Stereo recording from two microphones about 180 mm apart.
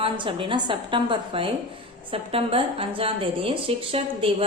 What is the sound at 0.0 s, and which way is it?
A woman's voice, 30° right (ahead or behind).